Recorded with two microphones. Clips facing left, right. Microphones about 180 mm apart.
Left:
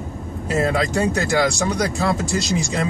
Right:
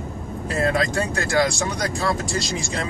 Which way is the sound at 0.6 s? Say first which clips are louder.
Left 2 dB; 20° left (ahead or behind).